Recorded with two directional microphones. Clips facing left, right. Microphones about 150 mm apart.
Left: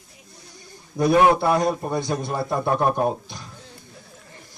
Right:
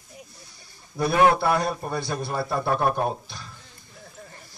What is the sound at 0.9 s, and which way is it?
A man's voice, 20° left (ahead or behind).